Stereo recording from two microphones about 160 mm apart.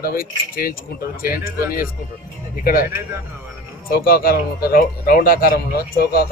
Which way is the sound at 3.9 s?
70° left (ahead or behind).